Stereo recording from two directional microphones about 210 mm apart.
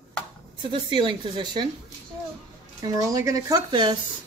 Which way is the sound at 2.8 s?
15° right (ahead or behind).